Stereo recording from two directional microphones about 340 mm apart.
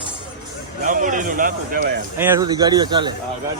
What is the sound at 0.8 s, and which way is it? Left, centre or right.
A man's voice, right.